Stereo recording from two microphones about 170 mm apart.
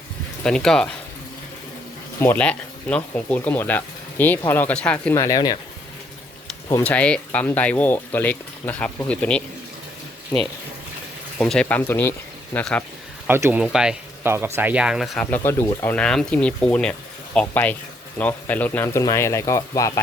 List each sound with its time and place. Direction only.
0.4 s speech: 5° left (ahead or behind)
2.1 s speech: 10° left (ahead or behind)
5.2 s speech: 20° left (ahead or behind)
6.7 s speech: 20° left (ahead or behind)
6.9 s speech: 10° left (ahead or behind)
11.3 s speech: 5° left (ahead or behind)
13.2 s speech: 10° right (ahead or behind); by 19.9 s 20° left (ahead or behind)